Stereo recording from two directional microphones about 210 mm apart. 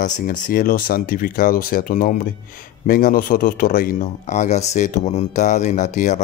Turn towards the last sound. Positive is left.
turn(degrees=35)  # may be behind; listen again after turning